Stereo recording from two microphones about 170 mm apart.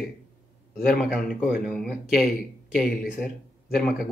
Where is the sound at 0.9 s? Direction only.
5° right (ahead or behind).